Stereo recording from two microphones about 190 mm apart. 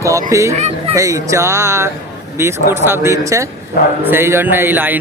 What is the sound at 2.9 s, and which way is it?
A man's voice, 15° right (ahead or behind).